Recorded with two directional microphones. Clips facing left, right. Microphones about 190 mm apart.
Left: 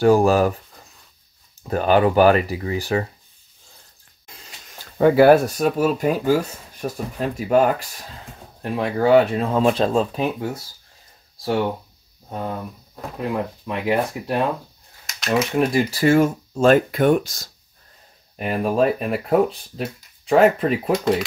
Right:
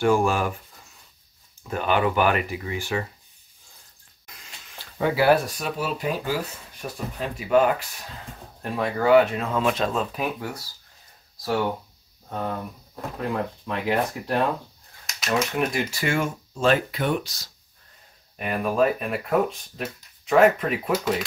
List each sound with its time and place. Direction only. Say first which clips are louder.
0.0 s speech: left 6 dB; 40° left (ahead or behind)
1.6 s speech: left 6 dB; 40° left (ahead or behind)
4.7 s speech: left 9 dB; 50° left (ahead or behind)
8.7 s speech: left 2 dB; 25° left (ahead or behind)
12.3 s speech: left 1 dB; 10° left (ahead or behind)
15.0 s a sound: left 4 dB; 5° right (ahead or behind)
15.5 s speech: left 6 dB; 35° left (ahead or behind)
18.3 s speech: left 4 dB; 35° left (ahead or behind)